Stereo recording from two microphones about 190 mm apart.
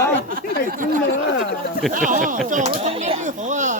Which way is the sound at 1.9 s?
45° right (ahead or behind).